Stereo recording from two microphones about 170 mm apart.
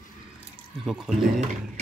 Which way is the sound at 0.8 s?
Centre (ahead or behind).